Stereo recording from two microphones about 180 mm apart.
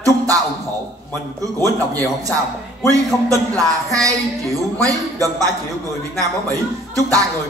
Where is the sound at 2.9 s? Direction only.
20° right (ahead or behind).